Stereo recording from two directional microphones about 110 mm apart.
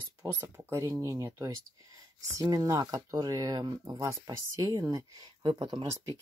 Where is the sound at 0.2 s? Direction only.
20° right (ahead or behind).